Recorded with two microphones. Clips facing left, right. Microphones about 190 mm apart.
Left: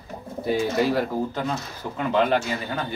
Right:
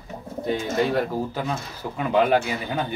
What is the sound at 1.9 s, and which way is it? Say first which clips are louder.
Speech: right 2 dB; 10° right (ahead or behind).